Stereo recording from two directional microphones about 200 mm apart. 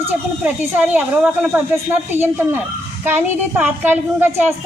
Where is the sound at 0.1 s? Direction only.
10° right (ahead or behind).